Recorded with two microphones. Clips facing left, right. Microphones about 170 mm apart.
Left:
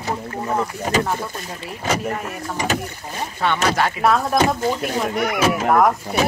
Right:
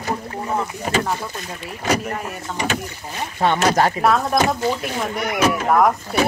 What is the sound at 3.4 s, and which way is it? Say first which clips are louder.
Speech: right 3 dB; 40° right (ahead or behind).